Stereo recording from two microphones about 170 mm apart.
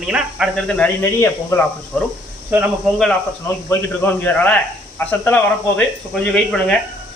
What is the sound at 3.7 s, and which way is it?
A man's voice, 10° left (ahead or behind).